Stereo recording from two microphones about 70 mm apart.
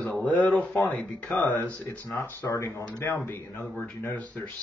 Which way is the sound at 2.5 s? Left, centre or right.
Left.